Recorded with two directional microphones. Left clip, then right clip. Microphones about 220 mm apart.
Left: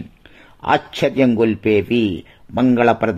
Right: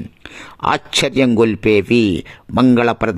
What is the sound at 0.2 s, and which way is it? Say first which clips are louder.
A man's voice: right 13 dB; 35° right (ahead or behind).